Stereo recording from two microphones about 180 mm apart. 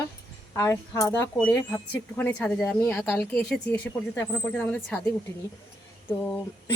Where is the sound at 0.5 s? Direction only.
15° left (ahead or behind).